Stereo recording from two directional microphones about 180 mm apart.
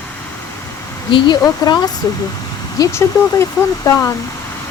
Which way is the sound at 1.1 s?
25° left (ahead or behind).